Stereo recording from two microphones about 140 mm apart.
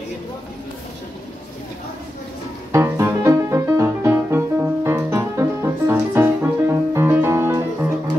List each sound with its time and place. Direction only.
2.7 s music: 20° right (ahead or behind)